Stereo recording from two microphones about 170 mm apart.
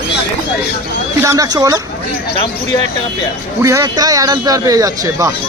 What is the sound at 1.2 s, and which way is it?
Speech, 20° right (ahead or behind).